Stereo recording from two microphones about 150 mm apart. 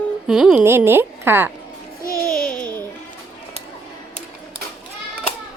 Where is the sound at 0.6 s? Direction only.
15° right (ahead or behind).